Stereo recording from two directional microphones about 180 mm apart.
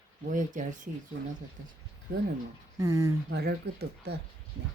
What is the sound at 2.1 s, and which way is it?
Speech, 55° right (ahead or behind).